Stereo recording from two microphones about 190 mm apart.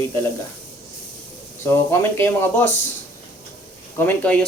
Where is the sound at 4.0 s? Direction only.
10° left (ahead or behind).